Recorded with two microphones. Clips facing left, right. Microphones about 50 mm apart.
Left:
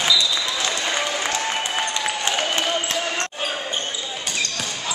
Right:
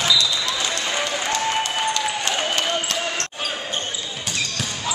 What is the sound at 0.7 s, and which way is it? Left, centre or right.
Applause, centre.